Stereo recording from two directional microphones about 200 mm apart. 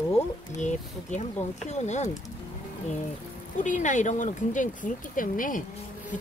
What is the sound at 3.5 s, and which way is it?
Speech, 40° left (ahead or behind).